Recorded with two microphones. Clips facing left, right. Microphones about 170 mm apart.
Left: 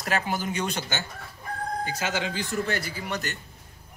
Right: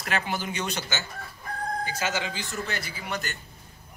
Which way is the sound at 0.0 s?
40° left (ahead or behind).